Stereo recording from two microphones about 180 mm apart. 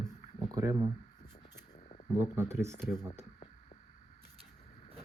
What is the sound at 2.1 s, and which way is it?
Speech, 15° right (ahead or behind).